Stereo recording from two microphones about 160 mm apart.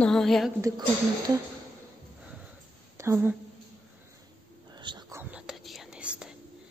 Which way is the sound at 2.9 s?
15° right (ahead or behind).